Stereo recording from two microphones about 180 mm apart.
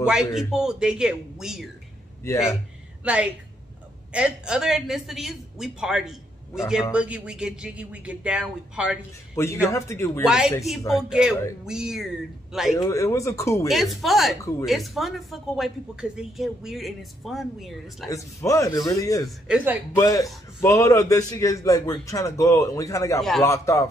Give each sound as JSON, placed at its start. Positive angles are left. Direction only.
{"t": 0.0, "sound": "speech", "side_deg": -5}
{"t": 3.0, "sound": "a woman's voice", "side_deg": -5}
{"t": 9.7, "sound": "a man's voice", "side_deg": 15}
{"t": 10.2, "sound": "speech", "side_deg": -5}
{"t": 12.7, "sound": "a man's voice", "side_deg": 15}
{"t": 13.7, "sound": "speech", "side_deg": 0}
{"t": 18.1, "sound": "a man's voice", "side_deg": 15}
{"t": 19.2, "sound": "speech", "side_deg": -5}
{"t": 20.0, "sound": "a man's voice", "side_deg": 20}